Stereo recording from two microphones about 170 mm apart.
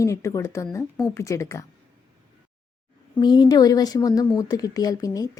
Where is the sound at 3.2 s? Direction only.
25° left (ahead or behind).